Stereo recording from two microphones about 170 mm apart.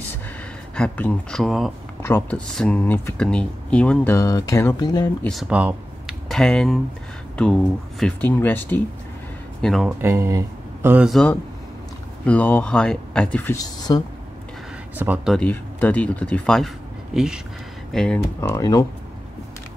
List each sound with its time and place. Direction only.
0.7 s speech: 10° left (ahead or behind)
2.0 s speech: 10° left (ahead or behind)
5.2 s speech: centre (ahead or behind)
9.6 s speech: centre (ahead or behind)
9.8 s speech: 15° right (ahead or behind)
11.1 s speech: 5° left (ahead or behind)
13.6 s speech: 25° left (ahead or behind)
15.0 s speech: 10° right (ahead or behind)
15.3 s speech: 10° left (ahead or behind)
18.5 s speech: 20° left (ahead or behind)